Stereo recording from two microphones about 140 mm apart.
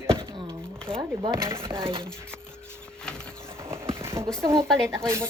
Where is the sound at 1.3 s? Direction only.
20° right (ahead or behind).